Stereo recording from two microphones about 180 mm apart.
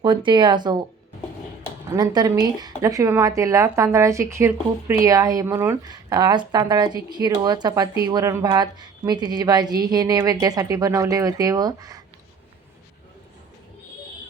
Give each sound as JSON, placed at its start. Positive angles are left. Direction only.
{"t": 0.0, "sound": "a woman's voice", "side_deg": -25}
{"t": 2.0, "sound": "a woman's voice", "side_deg": -20}